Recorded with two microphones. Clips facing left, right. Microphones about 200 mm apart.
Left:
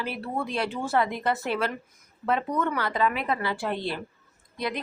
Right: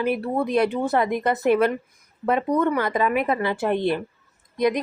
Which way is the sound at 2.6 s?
15° right (ahead or behind).